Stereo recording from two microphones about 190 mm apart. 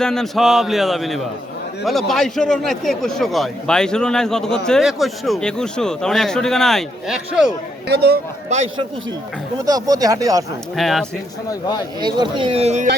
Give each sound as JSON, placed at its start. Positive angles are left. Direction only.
{"t": 0.0, "sound": "a man's voice", "side_deg": 5}
{"t": 7.9, "sound": "speech", "side_deg": -55}
{"t": 9.6, "sound": "speech", "side_deg": -20}
{"t": 10.8, "sound": "a man's voice", "side_deg": 0}
{"t": 11.9, "sound": "speech", "side_deg": -25}